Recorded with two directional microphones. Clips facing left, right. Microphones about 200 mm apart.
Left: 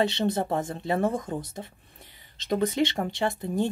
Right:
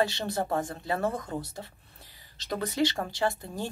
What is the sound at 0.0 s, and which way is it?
Speech, 20° left (ahead or behind).